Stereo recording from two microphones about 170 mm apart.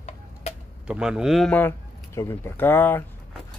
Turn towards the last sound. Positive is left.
turn(degrees=10)  # may be behind; listen again after turning